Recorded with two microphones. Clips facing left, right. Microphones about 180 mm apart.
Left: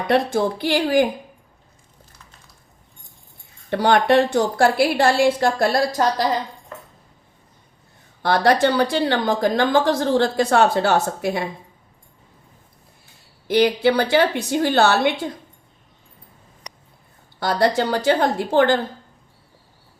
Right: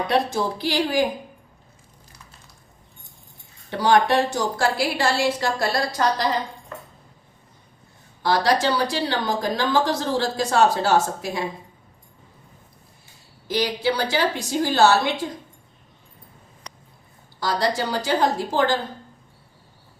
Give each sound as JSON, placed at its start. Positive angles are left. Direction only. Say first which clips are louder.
{"t": 0.1, "sound": "a woman's voice", "louder": "left 6 dB", "side_deg": 55}
{"t": 3.7, "sound": "a woman's voice", "louder": "left 2 dB", "side_deg": 60}
{"t": 8.2, "sound": "a woman's voice", "louder": "left 3 dB", "side_deg": 60}
{"t": 13.5, "sound": "a woman's voice", "louder": "left 6 dB", "side_deg": 60}
{"t": 17.4, "sound": "a woman's voice", "louder": "left 4 dB", "side_deg": 60}